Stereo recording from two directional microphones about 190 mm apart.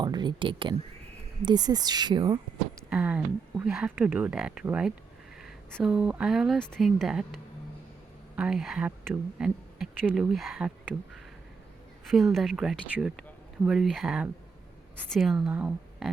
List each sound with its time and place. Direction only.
0.0 s speech: 25° right (ahead or behind)
2.9 s speech: 5° right (ahead or behind)
8.4 s speech: 5° right (ahead or behind)